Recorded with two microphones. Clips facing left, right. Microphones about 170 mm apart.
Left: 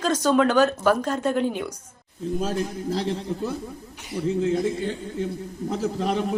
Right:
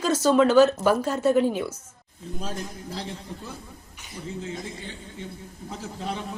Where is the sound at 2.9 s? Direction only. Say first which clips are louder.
Left 9 dB; 65° left (ahead or behind).